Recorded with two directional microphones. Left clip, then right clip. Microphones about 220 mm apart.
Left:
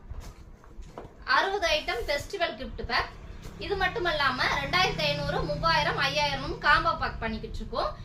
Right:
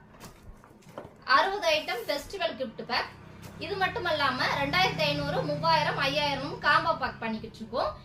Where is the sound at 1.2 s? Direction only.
15° left (ahead or behind).